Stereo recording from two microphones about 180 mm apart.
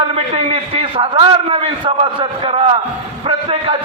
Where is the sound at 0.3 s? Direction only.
30° right (ahead or behind).